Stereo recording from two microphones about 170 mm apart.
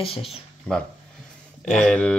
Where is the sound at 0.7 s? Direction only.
10° left (ahead or behind).